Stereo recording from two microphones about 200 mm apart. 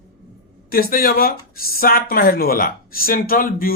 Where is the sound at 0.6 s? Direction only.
50° left (ahead or behind).